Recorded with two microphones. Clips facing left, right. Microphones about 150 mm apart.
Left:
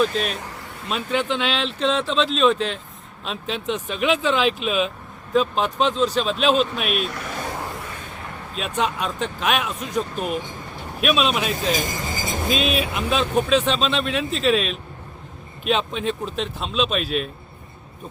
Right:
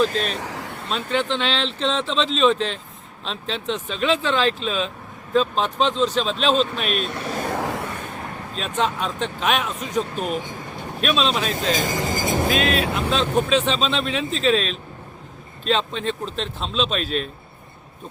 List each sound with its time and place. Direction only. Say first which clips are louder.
0.0 s speech: even; 5° left (ahead or behind)
0.4 s a sound: right 5 dB; 90° right
0.9 s speech: even; 10° left (ahead or behind)
7.1 s speech: right 3 dB; 30° right (ahead or behind)
7.5 s a sound: right 6 dB; 90° right
8.5 s speech: even; 10° left (ahead or behind)
12.1 s vehicle: right 5 dB; 60° right (ahead or behind)
13.1 s speech: left 2 dB; 5° left (ahead or behind)